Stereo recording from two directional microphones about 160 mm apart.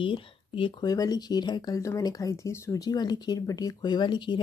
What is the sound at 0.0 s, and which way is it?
Speech, 35° left (ahead or behind).